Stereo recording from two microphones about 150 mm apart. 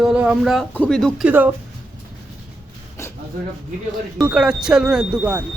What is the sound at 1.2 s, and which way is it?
Speech, 10° right (ahead or behind).